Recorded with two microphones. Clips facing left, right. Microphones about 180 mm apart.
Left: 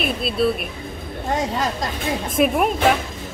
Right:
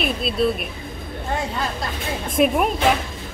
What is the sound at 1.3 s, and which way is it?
Speech, 40° left (ahead or behind).